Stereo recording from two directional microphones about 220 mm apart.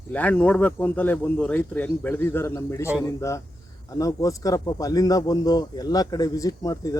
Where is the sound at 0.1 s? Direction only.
5° left (ahead or behind).